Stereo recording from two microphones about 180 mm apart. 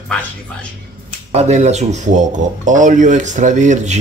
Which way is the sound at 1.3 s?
40° right (ahead or behind).